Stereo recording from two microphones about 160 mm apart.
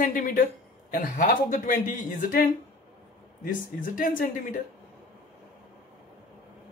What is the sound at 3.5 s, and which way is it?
Speech, 60° left (ahead or behind).